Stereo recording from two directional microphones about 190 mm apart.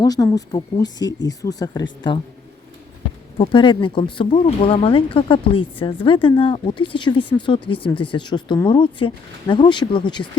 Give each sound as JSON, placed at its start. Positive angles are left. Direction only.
{"t": 0.0, "sound": "speech", "side_deg": 20}
{"t": 3.3, "sound": "speech", "side_deg": 25}